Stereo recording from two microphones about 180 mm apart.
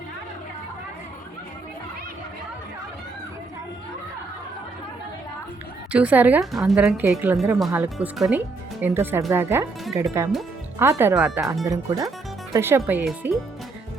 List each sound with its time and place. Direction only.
5.9 s a woman's voice: 10° right (ahead or behind)
11.1 s speech: centre (ahead or behind)
11.6 s a woman's voice: 20° right (ahead or behind)